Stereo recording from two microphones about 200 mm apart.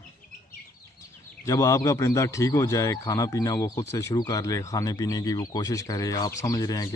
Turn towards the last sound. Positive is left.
turn(degrees=20)  # may be behind; listen again after turning